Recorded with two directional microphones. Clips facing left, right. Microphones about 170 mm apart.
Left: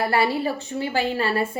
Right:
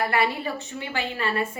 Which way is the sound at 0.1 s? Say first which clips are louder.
Left 3 dB; 30° left (ahead or behind).